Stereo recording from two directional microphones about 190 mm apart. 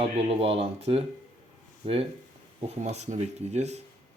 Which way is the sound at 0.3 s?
30° right (ahead or behind).